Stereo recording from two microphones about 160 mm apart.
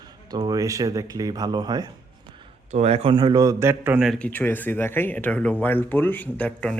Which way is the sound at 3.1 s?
25° right (ahead or behind).